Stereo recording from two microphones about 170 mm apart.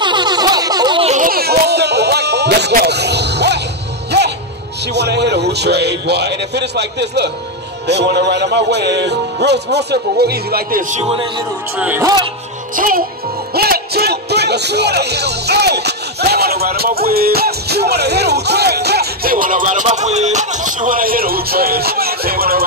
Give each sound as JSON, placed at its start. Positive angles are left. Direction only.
{"t": 0.0, "sound": "a sound", "side_deg": -25}
{"t": 1.0, "sound": "music", "side_deg": -50}
{"t": 4.9, "sound": "a man's voice", "side_deg": -80}
{"t": 7.8, "sound": "music", "side_deg": -85}
{"t": 11.0, "sound": "a man's voice", "side_deg": -35}
{"t": 11.8, "sound": "music", "side_deg": -10}
{"t": 12.7, "sound": "music", "side_deg": -55}
{"t": 13.6, "sound": "speech", "side_deg": -65}